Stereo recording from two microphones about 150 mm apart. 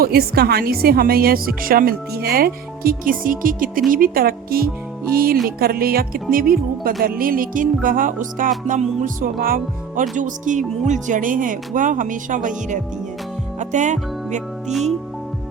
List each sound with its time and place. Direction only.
0.0 s speech: 90° right
5.5 s speech: 90° right
6.3 s speech: 75° right (ahead or behind)
7.2 s music: 70° right (ahead or behind)
13.6 s speech: 55° right (ahead or behind)